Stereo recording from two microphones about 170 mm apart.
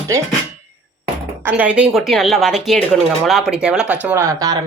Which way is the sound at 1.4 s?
10° right (ahead or behind).